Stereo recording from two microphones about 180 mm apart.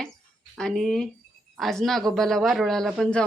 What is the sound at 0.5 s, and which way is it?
Speech, 5° left (ahead or behind).